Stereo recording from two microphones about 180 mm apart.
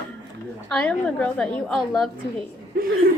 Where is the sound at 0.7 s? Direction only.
5° left (ahead or behind).